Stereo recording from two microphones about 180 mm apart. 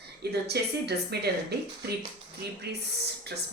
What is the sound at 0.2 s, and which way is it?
Speech, 65° right (ahead or behind).